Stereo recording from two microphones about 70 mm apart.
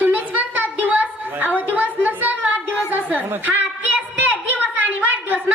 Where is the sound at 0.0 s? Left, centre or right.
Right.